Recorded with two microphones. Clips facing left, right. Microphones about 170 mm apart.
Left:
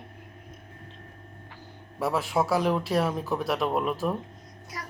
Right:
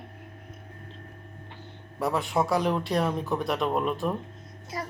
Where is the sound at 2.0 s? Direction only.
Centre (ahead or behind).